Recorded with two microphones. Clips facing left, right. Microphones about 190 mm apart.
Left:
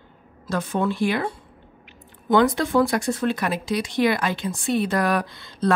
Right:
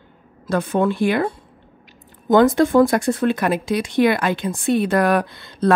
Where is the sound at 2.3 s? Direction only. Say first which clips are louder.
Right 5 dB; 45° right (ahead or behind).